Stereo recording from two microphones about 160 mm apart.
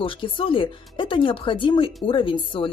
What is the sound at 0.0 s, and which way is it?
A woman's voice, 35° left (ahead or behind).